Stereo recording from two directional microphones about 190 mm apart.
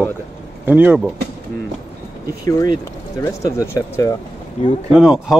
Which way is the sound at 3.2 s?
15° left (ahead or behind).